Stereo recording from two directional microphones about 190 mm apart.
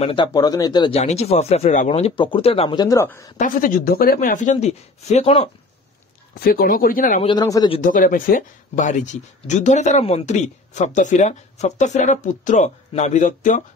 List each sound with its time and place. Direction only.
0.0 s speech: 25° left (ahead or behind)
3.3 s speech: 45° left (ahead or behind)
6.4 s speech: 50° left (ahead or behind)
7.2 s speech: 25° left (ahead or behind)
7.8 s speech: 45° left (ahead or behind)